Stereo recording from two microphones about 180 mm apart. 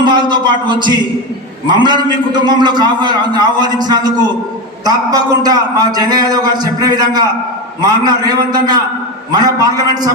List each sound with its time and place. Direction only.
0.0 s a man's voice: 25° right (ahead or behind)